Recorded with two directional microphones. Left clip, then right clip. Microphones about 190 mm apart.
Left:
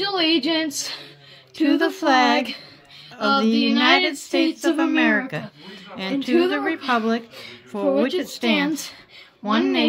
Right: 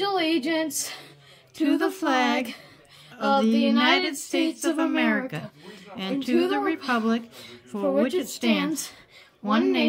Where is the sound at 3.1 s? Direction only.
20° right (ahead or behind).